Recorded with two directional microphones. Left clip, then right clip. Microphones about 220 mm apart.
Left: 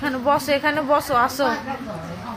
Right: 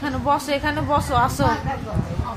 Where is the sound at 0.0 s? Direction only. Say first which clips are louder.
Left 1 dB; 10° left (ahead or behind).